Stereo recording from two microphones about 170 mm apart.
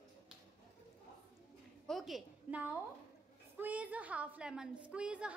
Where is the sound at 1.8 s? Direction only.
Centre (ahead or behind).